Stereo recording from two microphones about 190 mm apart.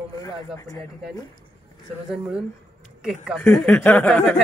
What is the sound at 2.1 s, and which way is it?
Speech, 5° right (ahead or behind).